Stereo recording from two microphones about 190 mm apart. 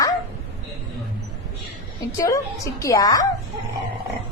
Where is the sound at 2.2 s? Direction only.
15° left (ahead or behind).